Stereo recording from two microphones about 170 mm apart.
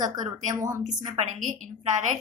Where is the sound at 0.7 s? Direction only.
45° right (ahead or behind).